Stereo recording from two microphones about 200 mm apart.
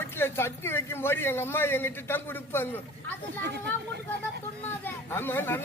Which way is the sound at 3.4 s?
55° right (ahead or behind).